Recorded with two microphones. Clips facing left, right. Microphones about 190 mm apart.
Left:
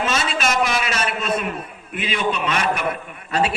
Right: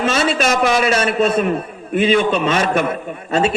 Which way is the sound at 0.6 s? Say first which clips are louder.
Right 7 dB; 45° right (ahead or behind).